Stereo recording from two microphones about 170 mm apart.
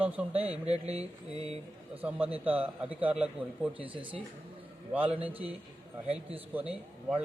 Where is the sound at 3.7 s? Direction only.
30° right (ahead or behind).